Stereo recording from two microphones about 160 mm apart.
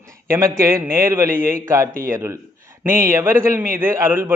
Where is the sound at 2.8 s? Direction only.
60° right (ahead or behind).